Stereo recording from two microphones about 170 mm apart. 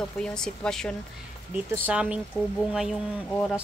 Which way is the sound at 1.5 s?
10° right (ahead or behind).